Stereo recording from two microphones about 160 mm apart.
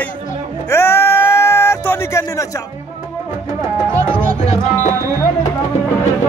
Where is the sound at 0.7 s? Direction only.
15° left (ahead or behind).